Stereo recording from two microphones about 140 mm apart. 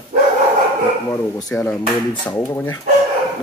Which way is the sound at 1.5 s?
5° left (ahead or behind).